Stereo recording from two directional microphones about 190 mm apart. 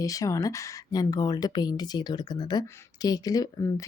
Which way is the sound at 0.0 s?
20° left (ahead or behind).